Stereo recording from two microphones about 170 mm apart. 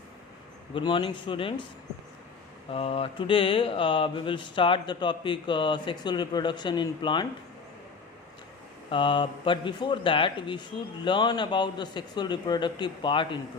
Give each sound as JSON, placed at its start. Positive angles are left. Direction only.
{"t": 0.7, "sound": "speech", "side_deg": 30}
{"t": 2.6, "sound": "speech", "side_deg": 35}
{"t": 8.9, "sound": "speech", "side_deg": 30}